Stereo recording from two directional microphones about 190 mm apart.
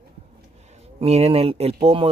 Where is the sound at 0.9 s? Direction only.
30° right (ahead or behind).